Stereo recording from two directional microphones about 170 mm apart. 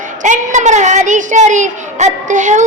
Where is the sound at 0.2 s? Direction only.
45° right (ahead or behind).